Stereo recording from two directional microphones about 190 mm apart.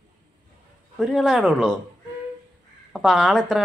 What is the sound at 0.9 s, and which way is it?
Speech, centre (ahead or behind).